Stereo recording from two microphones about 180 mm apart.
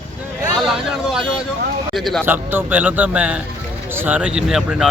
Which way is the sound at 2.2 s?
10° right (ahead or behind).